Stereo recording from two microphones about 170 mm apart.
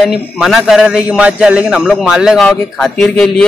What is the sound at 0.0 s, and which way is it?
A man's voice, centre (ahead or behind).